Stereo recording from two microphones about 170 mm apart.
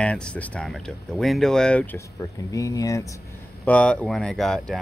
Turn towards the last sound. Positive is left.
turn(degrees=5)  # may be behind; listen again after turning